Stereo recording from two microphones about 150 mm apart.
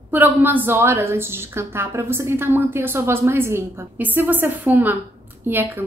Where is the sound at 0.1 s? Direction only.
10° right (ahead or behind).